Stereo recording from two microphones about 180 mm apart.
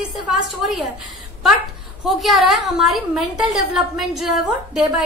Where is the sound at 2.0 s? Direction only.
Centre (ahead or behind).